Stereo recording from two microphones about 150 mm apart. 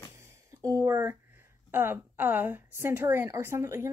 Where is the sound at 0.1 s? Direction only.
20° right (ahead or behind).